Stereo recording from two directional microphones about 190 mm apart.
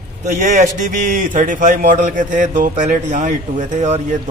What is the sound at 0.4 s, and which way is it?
A man's voice, 40° right (ahead or behind).